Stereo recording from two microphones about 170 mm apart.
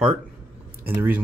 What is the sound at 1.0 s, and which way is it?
Speech, 10° right (ahead or behind).